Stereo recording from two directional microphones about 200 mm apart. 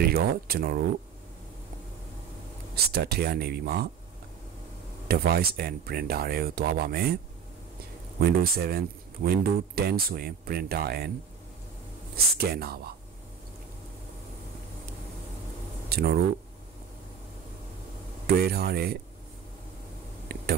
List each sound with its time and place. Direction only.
0.1 s speech: 50° right (ahead or behind)
2.7 s speech: 50° right (ahead or behind)
5.0 s speech: 50° right (ahead or behind)
8.2 s speech: 50° right (ahead or behind)
12.4 s speech: 50° right (ahead or behind)
15.9 s speech: 50° right (ahead or behind)
18.2 s speech: 50° right (ahead or behind)